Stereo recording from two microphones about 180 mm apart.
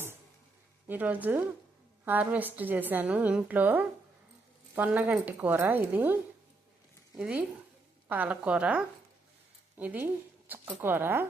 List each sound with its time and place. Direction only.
0.9 s a woman's voice: 10° right (ahead or behind)
7.2 s a woman's voice: 5° right (ahead or behind)